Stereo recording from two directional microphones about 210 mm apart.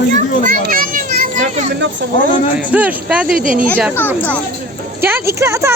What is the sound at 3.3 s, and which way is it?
Speech, 40° right (ahead or behind).